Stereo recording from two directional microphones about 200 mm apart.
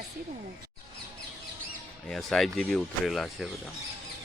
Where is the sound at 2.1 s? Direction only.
Centre (ahead or behind).